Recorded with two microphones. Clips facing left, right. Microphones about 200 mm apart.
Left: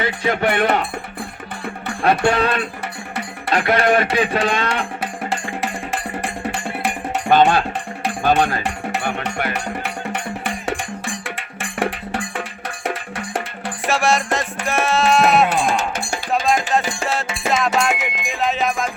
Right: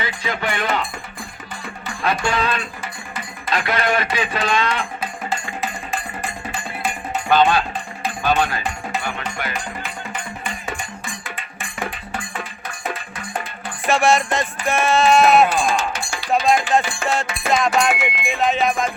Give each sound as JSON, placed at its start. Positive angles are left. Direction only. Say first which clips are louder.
{"t": 0.0, "sound": "music", "louder": "left 6 dB", "side_deg": 60}
{"t": 3.2, "sound": "speech", "louder": "left 4 dB", "side_deg": 60}
{"t": 4.9, "sound": "music", "louder": "left 2 dB", "side_deg": 80}
{"t": 7.3, "sound": "speech", "louder": "left 2 dB", "side_deg": 50}
{"t": 8.6, "sound": "music", "louder": "left 3 dB", "side_deg": 65}
{"t": 13.8, "sound": "music", "louder": "right 2 dB", "side_deg": 0}
{"t": 15.4, "sound": "music", "louder": "left 1 dB", "side_deg": 65}
{"t": 16.8, "sound": "music", "louder": "left 2 dB", "side_deg": 35}
{"t": 17.7, "sound": "music", "louder": "right 1 dB", "side_deg": 0}